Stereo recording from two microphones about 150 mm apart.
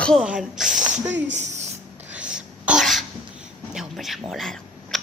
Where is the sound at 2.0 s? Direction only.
10° right (ahead or behind).